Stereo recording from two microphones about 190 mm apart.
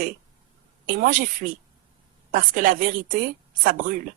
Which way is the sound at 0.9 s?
45° right (ahead or behind).